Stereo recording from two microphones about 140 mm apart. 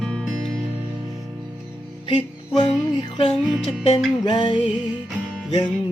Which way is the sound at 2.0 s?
40° left (ahead or behind).